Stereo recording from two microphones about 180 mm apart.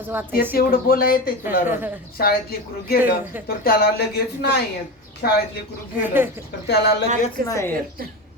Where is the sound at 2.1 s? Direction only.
55° left (ahead or behind).